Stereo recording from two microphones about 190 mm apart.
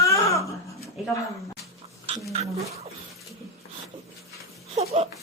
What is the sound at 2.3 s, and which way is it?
Dog, 35° right (ahead or behind).